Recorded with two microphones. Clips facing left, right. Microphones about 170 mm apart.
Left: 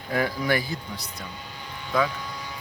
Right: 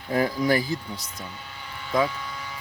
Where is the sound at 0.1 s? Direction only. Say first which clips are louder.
Right 2 dB; 30° right (ahead or behind).